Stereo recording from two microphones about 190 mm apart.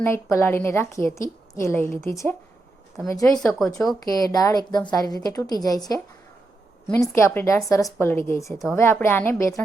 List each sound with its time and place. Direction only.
0.0 s a woman's voice: 15° left (ahead or behind)
3.2 s speech: 5° left (ahead or behind)
4.0 s a woman's voice: 20° left (ahead or behind)